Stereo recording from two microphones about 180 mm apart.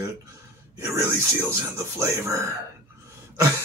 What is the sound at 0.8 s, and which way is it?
Speech, 15° right (ahead or behind).